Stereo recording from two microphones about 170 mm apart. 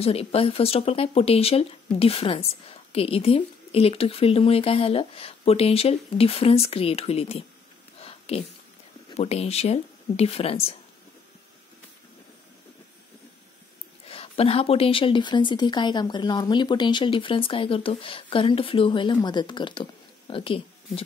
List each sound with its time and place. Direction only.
0.0 s speech: 35° left (ahead or behind)
8.0 s a sound: 35° left (ahead or behind)
9.1 s speech: 40° left (ahead or behind)
14.0 s speech: 35° left (ahead or behind)